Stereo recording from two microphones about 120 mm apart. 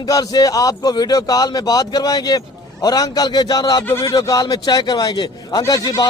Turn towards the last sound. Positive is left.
turn(degrees=35)  # may be behind; listen again after turning